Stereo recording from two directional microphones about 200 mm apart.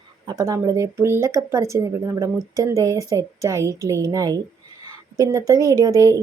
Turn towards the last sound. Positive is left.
turn(degrees=-15)  # may be behind; listen again after turning